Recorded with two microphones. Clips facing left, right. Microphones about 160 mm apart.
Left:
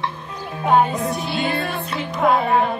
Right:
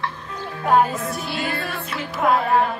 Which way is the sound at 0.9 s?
20° left (ahead or behind).